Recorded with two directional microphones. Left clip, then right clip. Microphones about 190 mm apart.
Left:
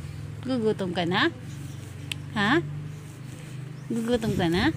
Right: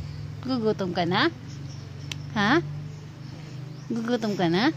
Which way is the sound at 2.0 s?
15° right (ahead or behind).